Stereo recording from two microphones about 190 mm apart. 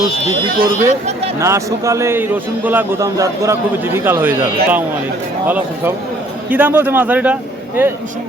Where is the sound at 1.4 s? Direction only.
15° right (ahead or behind).